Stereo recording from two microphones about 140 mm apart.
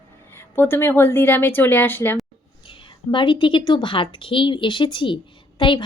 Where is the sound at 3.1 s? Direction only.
35° left (ahead or behind).